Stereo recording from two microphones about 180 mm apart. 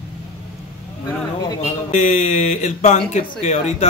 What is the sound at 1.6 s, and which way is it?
Speech, 45° left (ahead or behind).